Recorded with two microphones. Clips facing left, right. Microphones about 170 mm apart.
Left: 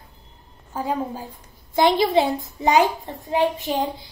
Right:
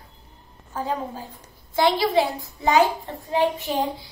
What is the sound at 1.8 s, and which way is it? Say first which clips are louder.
A child's voice: left 2 dB; 20° left (ahead or behind).